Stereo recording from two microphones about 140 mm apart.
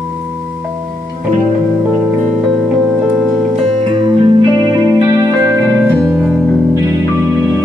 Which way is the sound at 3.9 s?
35° right (ahead or behind).